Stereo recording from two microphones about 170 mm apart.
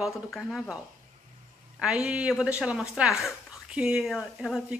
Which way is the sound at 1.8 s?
5° right (ahead or behind).